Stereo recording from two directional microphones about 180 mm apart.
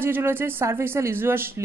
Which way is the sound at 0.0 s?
10° right (ahead or behind).